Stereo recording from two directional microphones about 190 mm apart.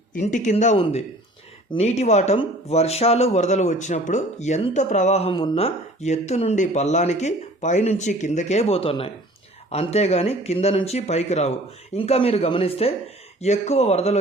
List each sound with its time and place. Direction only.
0.1 s speech: 40° left (ahead or behind)